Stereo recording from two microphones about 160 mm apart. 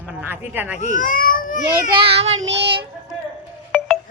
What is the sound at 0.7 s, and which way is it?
Speech, 50° left (ahead or behind).